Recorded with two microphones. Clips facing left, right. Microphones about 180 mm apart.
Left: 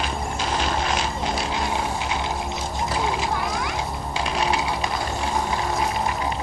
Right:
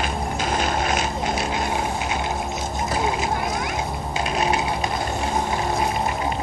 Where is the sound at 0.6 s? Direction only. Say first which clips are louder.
Right 1 dB; 50° right (ahead or behind).